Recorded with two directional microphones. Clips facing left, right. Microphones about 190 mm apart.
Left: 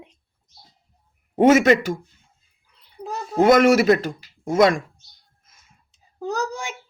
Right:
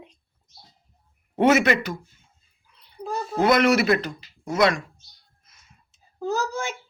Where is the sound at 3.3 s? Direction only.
45° left (ahead or behind).